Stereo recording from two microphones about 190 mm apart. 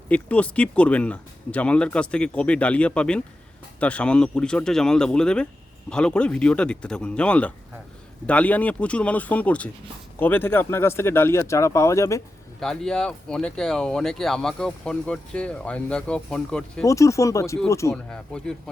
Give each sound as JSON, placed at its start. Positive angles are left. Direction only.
{"t": 0.1, "sound": "speech", "side_deg": 5}
{"t": 12.5, "sound": "speech", "side_deg": 5}
{"t": 16.8, "sound": "speech", "side_deg": 15}
{"t": 17.9, "sound": "speech", "side_deg": 5}